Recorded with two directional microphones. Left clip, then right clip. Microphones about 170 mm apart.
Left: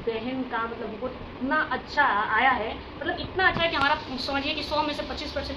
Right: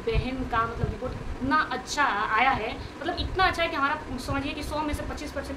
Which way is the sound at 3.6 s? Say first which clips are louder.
Left 2 dB; 15° right (ahead or behind).